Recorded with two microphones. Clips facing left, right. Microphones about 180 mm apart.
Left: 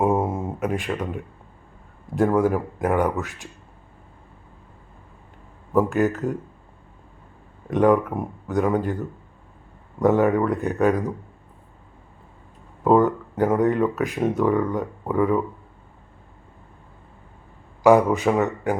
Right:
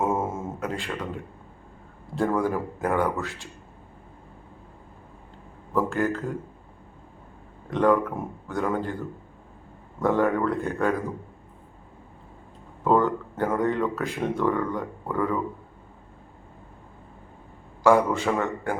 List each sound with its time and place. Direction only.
0.0 s speech: 15° left (ahead or behind)
5.7 s speech: 15° left (ahead or behind)
7.7 s speech: 15° left (ahead or behind)
10.0 s speech: 15° left (ahead or behind)
13.1 s speech: 15° left (ahead or behind)
17.8 s speech: 15° left (ahead or behind)